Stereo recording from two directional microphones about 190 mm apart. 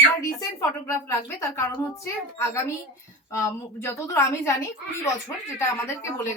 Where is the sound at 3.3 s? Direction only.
15° left (ahead or behind).